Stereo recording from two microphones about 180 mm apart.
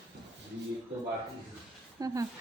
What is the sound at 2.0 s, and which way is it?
Speech, 20° right (ahead or behind).